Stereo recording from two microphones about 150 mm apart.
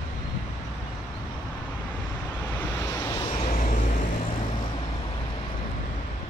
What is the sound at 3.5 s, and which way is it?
Vehicle, 55° left (ahead or behind).